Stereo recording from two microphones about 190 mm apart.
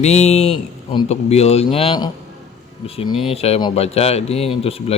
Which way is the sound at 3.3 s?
30° left (ahead or behind).